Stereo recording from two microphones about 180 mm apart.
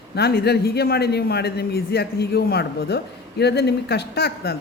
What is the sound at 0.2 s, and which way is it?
A man's voice, 60° left (ahead or behind).